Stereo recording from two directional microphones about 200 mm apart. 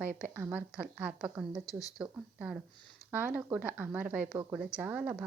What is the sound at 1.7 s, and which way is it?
Speech, 15° left (ahead or behind).